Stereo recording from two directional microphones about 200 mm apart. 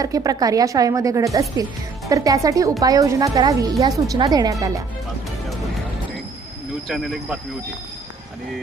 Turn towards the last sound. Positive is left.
turn(degrees=0)  # may be behind; listen again after turning